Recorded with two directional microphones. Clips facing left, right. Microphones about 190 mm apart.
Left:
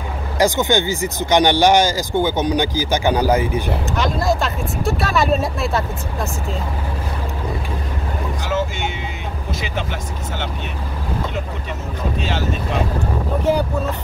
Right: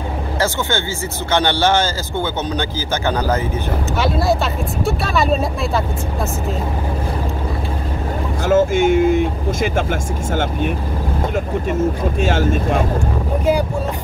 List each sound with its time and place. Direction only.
0.4 s speech: 15° left (ahead or behind)
4.0 s speech: centre (ahead or behind)
8.5 s speech: 50° right (ahead or behind)
12.2 s speech: 50° right (ahead or behind)